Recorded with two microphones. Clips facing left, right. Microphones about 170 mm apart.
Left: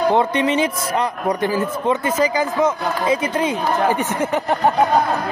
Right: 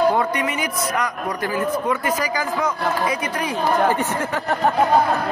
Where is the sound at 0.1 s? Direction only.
25° left (ahead or behind).